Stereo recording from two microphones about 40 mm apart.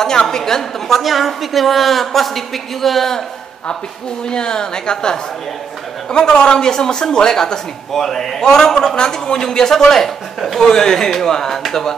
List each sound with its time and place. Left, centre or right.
0.0 s a woman's voice: centre
4.3 s a woman's voice: left